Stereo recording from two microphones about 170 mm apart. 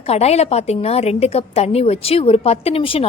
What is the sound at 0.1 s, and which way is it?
A woman's voice, 40° left (ahead or behind).